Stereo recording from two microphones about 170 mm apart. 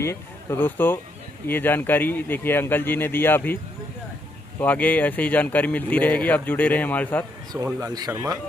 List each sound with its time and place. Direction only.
0.0 s speech: 15° left (ahead or behind)
4.6 s speech: 10° left (ahead or behind)
7.5 s speech: 20° right (ahead or behind)